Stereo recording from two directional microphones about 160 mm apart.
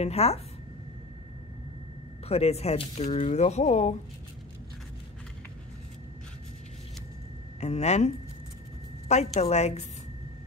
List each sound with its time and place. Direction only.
0.0 s a woman's voice: 40° left (ahead or behind)
2.2 s speech: 40° left (ahead or behind)
7.6 s speech: 45° left (ahead or behind)
9.1 s speech: 45° left (ahead or behind)